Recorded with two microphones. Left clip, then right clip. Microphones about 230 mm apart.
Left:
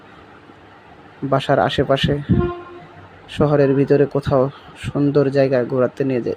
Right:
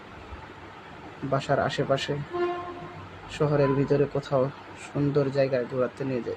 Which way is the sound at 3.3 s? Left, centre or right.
Left.